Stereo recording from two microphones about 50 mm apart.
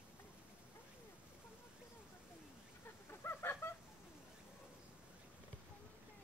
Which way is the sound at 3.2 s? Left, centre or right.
Left.